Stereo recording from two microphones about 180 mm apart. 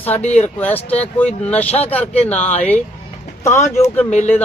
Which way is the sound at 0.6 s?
10° left (ahead or behind).